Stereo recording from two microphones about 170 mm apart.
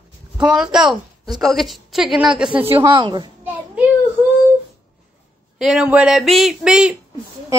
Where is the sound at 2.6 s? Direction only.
30° right (ahead or behind).